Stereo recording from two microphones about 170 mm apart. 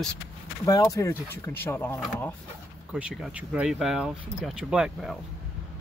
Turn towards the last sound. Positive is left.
turn(degrees=-5)  # may be behind; listen again after turning